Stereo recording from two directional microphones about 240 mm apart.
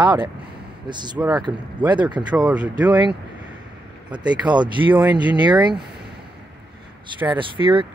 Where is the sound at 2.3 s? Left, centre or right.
Centre.